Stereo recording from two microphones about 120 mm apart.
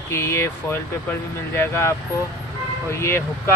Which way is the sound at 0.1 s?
25° left (ahead or behind).